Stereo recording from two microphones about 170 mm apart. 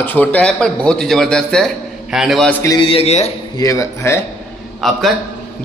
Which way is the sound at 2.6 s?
20° left (ahead or behind).